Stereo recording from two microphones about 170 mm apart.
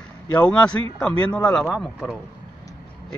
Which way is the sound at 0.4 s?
5° left (ahead or behind).